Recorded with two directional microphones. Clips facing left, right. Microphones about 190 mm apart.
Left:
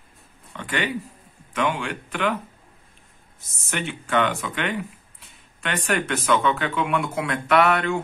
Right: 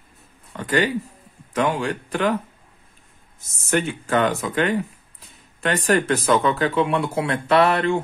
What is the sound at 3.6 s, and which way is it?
Speech, 40° right (ahead or behind).